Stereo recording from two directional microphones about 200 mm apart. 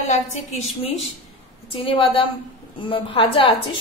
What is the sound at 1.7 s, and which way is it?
A woman's voice, 25° left (ahead or behind).